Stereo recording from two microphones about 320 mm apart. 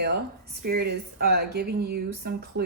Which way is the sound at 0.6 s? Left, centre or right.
Right.